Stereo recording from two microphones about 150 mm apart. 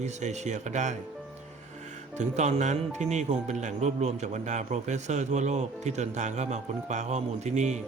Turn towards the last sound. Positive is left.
turn(degrees=-50)  # may be behind; listen again after turning